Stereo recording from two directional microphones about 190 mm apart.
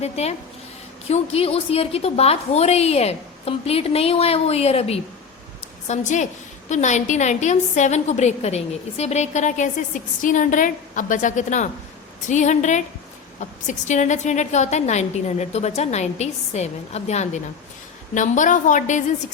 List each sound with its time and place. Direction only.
0.0 s a woman's voice: 35° left (ahead or behind)